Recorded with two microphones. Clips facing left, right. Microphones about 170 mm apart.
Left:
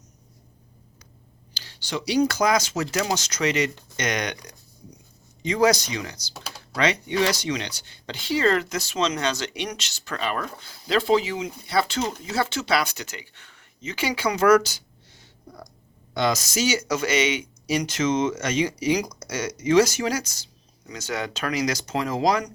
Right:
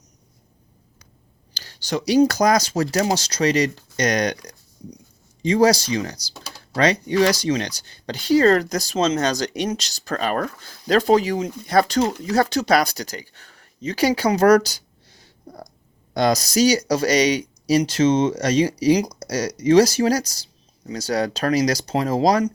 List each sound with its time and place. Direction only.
1.5 s speech: 45° right (ahead or behind)
16.1 s speech: 40° right (ahead or behind)